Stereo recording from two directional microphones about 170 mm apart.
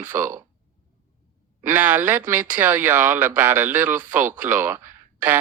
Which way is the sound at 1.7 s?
10° right (ahead or behind).